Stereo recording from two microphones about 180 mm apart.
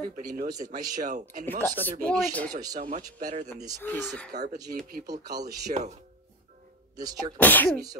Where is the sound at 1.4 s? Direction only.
10° left (ahead or behind).